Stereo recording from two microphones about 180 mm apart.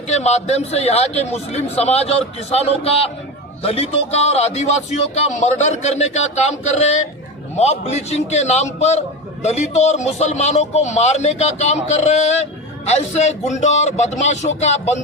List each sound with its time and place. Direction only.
0.1 s a man's voice: 40° left (ahead or behind)